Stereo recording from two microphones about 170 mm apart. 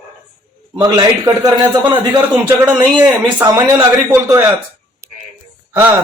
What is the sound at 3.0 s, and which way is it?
A man's voice, 15° right (ahead or behind).